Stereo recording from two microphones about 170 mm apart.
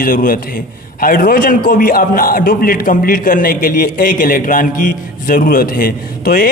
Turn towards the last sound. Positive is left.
turn(degrees=55)  # may be behind; listen again after turning